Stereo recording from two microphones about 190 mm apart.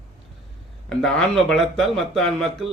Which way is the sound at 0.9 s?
5° left (ahead or behind).